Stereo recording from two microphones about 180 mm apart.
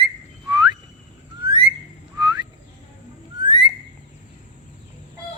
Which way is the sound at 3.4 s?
25° right (ahead or behind).